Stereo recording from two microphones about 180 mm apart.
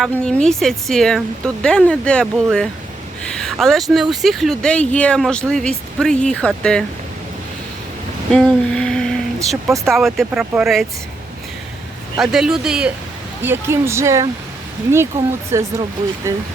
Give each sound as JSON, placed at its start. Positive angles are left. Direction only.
{"t": 0.0, "sound": "speech", "side_deg": 5}
{"t": 8.3, "sound": "a sound", "side_deg": 5}
{"t": 9.6, "sound": "speech", "side_deg": -15}
{"t": 9.9, "sound": "speech", "side_deg": 0}
{"t": 12.2, "sound": "speech", "side_deg": -5}